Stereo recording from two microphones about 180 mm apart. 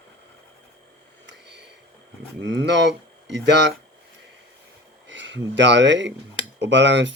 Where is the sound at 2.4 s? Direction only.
75° right (ahead or behind).